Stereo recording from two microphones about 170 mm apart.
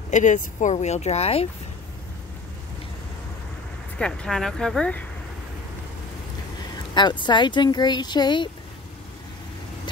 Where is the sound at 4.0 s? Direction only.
5° left (ahead or behind).